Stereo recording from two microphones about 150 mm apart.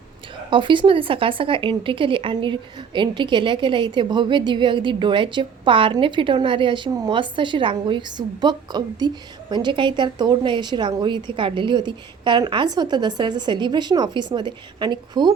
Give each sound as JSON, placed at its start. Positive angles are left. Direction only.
{"t": 0.5, "sound": "speech", "side_deg": -35}